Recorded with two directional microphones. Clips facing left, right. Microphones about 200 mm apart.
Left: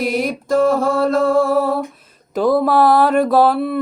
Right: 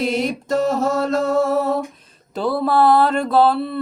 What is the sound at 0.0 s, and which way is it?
Mantra, 25° right (ahead or behind).